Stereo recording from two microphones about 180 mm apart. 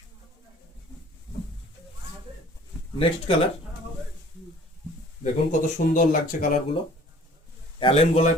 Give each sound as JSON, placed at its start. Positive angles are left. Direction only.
{"t": 3.0, "sound": "speech", "side_deg": 30}
{"t": 5.2, "sound": "speech", "side_deg": 45}
{"t": 7.8, "sound": "speech", "side_deg": 30}